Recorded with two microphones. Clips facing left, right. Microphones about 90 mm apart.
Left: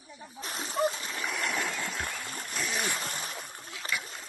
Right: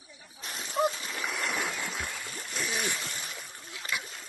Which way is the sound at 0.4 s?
40° left (ahead or behind).